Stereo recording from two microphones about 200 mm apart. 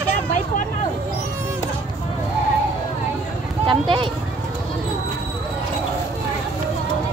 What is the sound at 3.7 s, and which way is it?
Speech, 25° right (ahead or behind).